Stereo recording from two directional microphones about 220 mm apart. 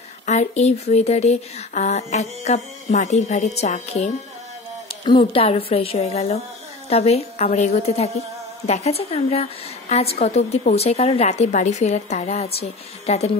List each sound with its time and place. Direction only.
0.3 s a woman's voice: 30° left (ahead or behind)